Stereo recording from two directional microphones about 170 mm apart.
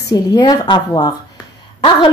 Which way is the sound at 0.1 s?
20° left (ahead or behind).